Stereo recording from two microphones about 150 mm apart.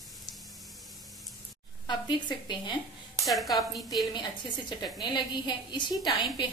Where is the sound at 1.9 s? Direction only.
30° left (ahead or behind).